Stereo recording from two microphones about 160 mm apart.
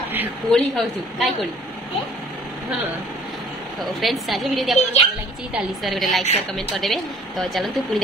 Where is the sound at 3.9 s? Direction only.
Centre (ahead or behind).